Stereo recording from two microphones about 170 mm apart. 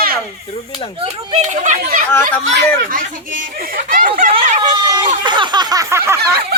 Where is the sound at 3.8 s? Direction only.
55° right (ahead or behind).